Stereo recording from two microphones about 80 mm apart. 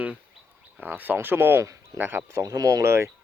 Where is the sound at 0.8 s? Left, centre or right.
Right.